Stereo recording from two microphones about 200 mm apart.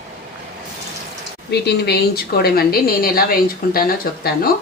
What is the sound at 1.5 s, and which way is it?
A woman's voice, 55° left (ahead or behind).